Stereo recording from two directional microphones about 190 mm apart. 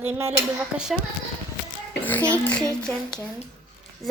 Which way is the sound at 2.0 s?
10° left (ahead or behind).